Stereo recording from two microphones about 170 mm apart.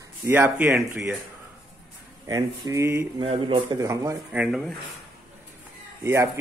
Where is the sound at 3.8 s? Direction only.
20° right (ahead or behind).